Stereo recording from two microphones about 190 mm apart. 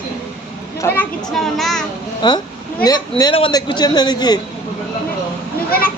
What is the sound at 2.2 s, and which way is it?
Speech, 20° left (ahead or behind).